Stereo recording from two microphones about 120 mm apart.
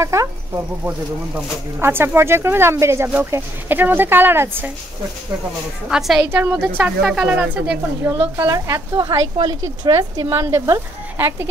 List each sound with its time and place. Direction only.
0.0 s speech: 25° right (ahead or behind)
5.9 s a woman's voice: 5° right (ahead or behind)
6.2 s speech: 20° right (ahead or behind)
7.0 s a woman's voice: 5° right (ahead or behind); by 11.4 s 20° right (ahead or behind)